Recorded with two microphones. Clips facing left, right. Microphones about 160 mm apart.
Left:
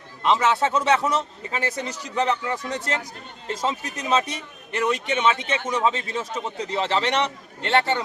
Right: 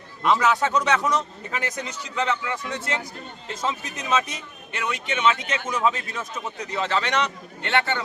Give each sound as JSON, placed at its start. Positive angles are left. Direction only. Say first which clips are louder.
{"t": 0.2, "sound": "a man's voice", "louder": "even", "side_deg": 25}